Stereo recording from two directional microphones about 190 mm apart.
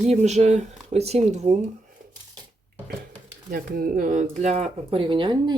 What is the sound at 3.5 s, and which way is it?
Speech, 50° right (ahead or behind).